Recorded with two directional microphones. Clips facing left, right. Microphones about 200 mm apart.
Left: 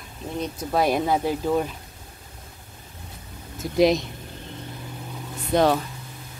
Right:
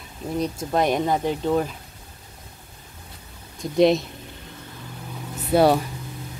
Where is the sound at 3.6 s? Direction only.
Centre (ahead or behind).